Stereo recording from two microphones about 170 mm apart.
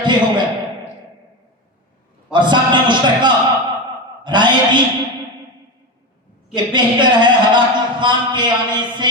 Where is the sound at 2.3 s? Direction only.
25° right (ahead or behind).